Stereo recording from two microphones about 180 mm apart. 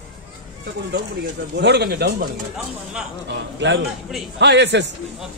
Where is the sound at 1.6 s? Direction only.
65° right (ahead or behind).